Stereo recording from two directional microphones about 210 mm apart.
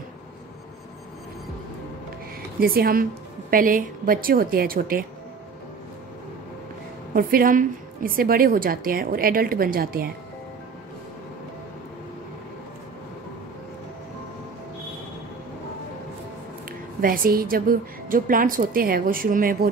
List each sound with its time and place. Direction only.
2.6 s a woman's voice: 45° right (ahead or behind)
7.2 s a woman's voice: 45° right (ahead or behind)
17.0 s a woman's voice: 40° right (ahead or behind)